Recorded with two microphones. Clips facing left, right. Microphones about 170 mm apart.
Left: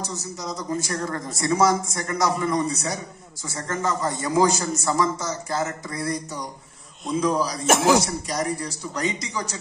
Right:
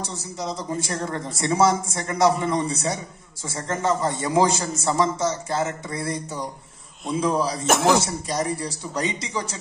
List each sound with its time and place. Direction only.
0.0 s a man's voice: 30° right (ahead or behind)
7.6 s speech: centre (ahead or behind)
8.0 s a man's voice: 25° right (ahead or behind)